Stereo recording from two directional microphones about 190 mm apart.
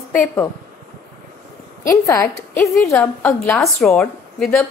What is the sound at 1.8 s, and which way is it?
A woman's voice, 15° left (ahead or behind).